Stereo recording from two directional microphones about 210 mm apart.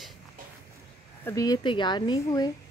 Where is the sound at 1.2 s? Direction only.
15° left (ahead or behind).